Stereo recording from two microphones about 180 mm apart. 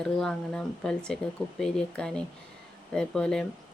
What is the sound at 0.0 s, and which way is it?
Speech, 5° left (ahead or behind).